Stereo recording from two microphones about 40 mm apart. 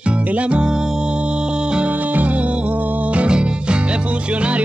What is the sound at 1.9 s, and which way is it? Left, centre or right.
Music, right.